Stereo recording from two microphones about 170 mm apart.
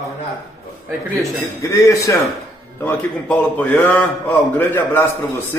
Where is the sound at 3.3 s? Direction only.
5° left (ahead or behind).